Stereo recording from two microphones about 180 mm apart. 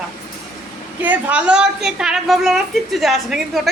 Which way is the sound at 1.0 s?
10° right (ahead or behind).